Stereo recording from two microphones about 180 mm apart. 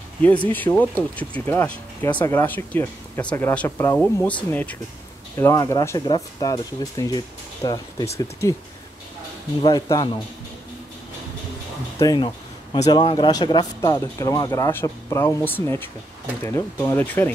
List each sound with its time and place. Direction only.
0.5 s speech: 10° left (ahead or behind)
5.4 s speech: 20° left (ahead or behind)
9.6 s speech: 20° left (ahead or behind)
12.0 s speech: 20° left (ahead or behind)